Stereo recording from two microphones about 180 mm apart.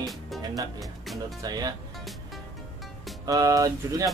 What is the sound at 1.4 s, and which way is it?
Speech, 20° right (ahead or behind).